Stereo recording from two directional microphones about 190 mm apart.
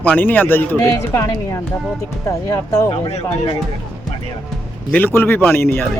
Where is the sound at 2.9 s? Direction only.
30° left (ahead or behind).